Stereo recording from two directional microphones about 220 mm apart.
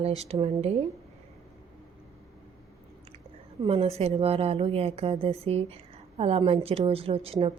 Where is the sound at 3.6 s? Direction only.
25° right (ahead or behind).